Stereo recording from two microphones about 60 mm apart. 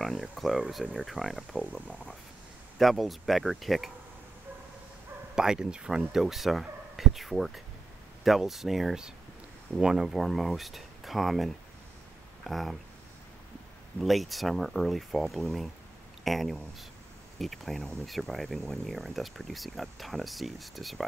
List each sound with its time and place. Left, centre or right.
0.0 s speech: centre
1.7 s speech: left
2.8 s speech: centre
5.3 s speech: centre
14.0 s speech: centre